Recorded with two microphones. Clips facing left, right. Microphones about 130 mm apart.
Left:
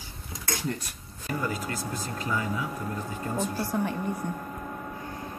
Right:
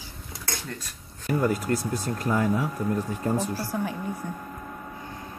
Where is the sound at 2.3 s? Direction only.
55° right (ahead or behind).